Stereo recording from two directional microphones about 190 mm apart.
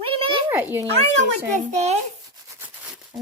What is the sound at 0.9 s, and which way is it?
A child's voice, 35° right (ahead or behind).